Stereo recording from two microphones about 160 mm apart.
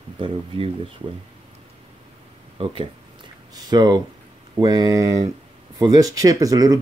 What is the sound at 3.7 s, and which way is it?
Speech, 25° right (ahead or behind).